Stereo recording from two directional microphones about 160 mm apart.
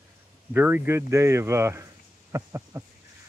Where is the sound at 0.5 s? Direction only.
10° right (ahead or behind).